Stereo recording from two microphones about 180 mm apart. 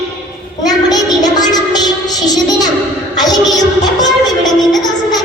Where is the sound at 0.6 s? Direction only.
20° left (ahead or behind).